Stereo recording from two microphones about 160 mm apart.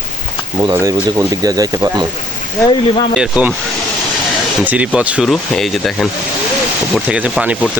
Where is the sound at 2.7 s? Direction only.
30° left (ahead or behind).